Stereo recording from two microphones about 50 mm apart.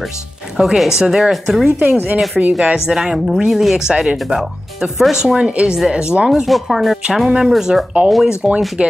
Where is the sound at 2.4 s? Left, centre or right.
Centre.